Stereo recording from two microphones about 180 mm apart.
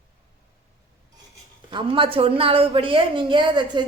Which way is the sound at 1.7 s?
30° right (ahead or behind).